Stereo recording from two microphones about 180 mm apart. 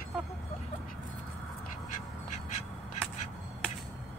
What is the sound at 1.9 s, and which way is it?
Crow, 45° left (ahead or behind).